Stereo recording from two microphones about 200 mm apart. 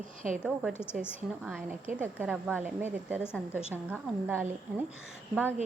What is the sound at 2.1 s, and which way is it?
A woman's voice, 5° right (ahead or behind).